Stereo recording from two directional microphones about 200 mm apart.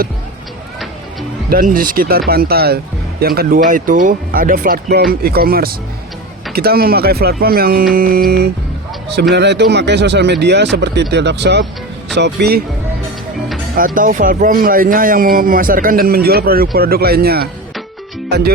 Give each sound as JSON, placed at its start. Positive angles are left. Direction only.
{"t": 1.5, "sound": "speech", "side_deg": -45}
{"t": 13.7, "sound": "speech", "side_deg": -45}
{"t": 18.3, "sound": "music", "side_deg": -55}